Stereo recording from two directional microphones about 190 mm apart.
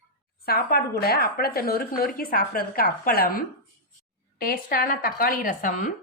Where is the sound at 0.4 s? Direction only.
55° left (ahead or behind).